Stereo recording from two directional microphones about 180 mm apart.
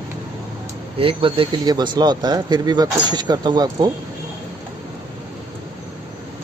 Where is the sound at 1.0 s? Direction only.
30° right (ahead or behind).